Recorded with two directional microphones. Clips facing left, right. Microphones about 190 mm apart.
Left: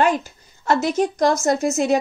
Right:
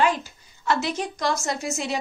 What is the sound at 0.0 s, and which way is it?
A woman's voice, 50° left (ahead or behind).